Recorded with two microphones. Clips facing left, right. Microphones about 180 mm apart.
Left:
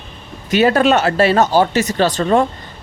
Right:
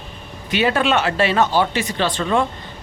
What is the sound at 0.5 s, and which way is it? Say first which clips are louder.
Speech: left 5 dB; 40° left (ahead or behind).